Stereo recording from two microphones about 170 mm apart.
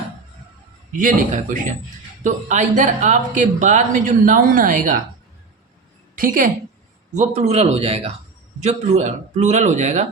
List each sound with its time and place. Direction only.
0.9 s speech: 50° right (ahead or behind)
6.1 s a woman's voice: 55° right (ahead or behind)
7.1 s a man's voice: 45° right (ahead or behind)